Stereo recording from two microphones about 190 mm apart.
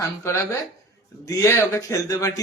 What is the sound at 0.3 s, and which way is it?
A man's voice, 15° left (ahead or behind).